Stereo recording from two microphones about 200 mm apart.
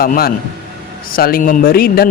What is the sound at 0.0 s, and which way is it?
Speech, 45° left (ahead or behind).